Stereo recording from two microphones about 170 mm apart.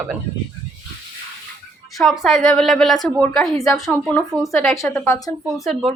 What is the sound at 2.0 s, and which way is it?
A woman's voice, centre (ahead or behind).